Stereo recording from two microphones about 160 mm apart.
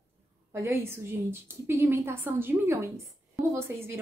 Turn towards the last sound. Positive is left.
turn(degrees=-15)  # may be behind; listen again after turning